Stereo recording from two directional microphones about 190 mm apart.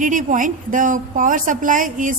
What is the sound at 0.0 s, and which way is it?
A woman's voice, 45° right (ahead or behind).